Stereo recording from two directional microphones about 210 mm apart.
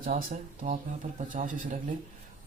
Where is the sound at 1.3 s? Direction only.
40° right (ahead or behind).